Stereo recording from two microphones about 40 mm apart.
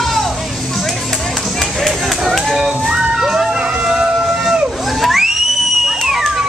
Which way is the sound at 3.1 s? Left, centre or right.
Centre.